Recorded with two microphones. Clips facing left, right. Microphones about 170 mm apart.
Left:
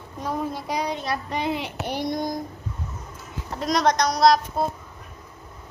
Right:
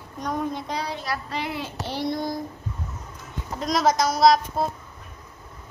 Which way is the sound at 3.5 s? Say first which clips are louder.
Even; centre (ahead or behind).